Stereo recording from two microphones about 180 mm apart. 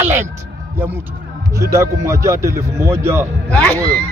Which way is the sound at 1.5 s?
15° right (ahead or behind).